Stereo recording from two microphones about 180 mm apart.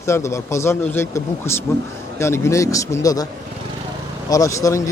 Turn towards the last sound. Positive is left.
turn(degrees=15)  # may be behind; listen again after turning